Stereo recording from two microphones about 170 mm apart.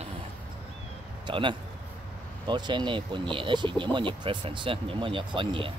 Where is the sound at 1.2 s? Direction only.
30° right (ahead or behind).